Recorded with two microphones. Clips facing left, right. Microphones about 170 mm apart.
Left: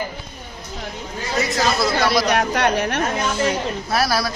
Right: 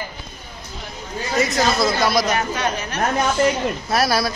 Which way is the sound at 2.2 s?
65° left (ahead or behind).